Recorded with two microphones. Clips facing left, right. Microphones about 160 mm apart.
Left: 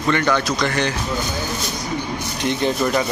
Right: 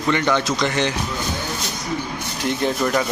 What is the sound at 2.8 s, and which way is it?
Speech, 5° left (ahead or behind).